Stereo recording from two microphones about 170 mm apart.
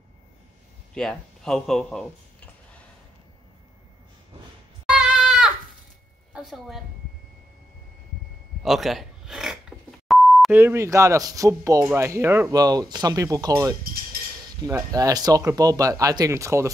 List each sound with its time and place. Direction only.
0.9 s speech: 5° left (ahead or behind)
4.8 s goat: 5° right (ahead or behind)
6.3 s a woman's voice: centre (ahead or behind)
8.6 s beep: centre (ahead or behind)
10.5 s speech: 15° right (ahead or behind)